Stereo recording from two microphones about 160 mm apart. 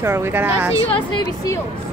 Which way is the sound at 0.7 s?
35° left (ahead or behind).